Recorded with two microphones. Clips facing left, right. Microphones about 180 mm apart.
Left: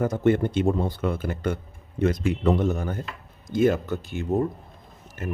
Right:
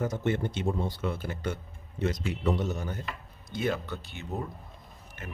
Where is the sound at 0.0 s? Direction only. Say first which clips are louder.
Left 8 dB; 55° left (ahead or behind).